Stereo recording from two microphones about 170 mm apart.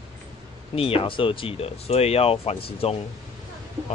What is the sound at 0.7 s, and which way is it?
Speech, 35° left (ahead or behind).